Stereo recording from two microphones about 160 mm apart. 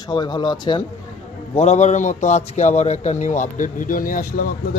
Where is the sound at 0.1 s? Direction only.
30° left (ahead or behind).